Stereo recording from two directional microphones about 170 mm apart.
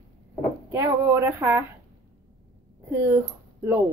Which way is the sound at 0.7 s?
15° right (ahead or behind).